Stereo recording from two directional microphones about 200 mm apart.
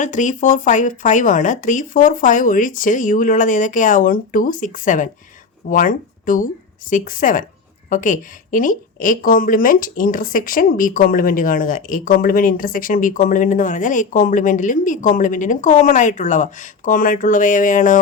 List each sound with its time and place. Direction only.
0.0 s a woman's voice: 40° left (ahead or behind)